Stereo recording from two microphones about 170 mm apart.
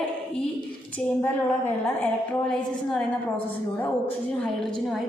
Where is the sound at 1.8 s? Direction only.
5° left (ahead or behind).